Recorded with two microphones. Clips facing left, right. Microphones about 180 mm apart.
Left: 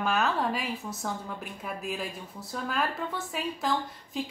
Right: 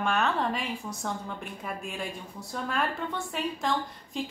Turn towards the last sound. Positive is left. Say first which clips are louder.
# even
turn(degrees=0)  # may be behind; listen again after turning